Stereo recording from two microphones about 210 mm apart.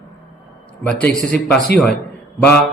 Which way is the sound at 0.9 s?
5° left (ahead or behind).